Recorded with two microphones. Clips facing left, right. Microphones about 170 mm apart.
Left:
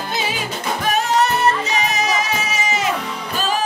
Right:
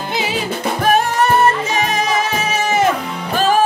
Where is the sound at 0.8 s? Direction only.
55° right (ahead or behind).